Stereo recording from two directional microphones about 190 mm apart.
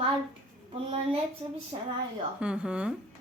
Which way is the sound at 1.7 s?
35° right (ahead or behind).